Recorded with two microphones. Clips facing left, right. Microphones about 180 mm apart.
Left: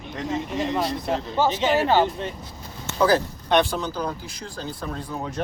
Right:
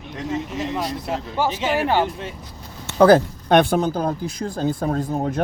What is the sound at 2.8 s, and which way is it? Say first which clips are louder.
Speech: right 7 dB; 60° right (ahead or behind).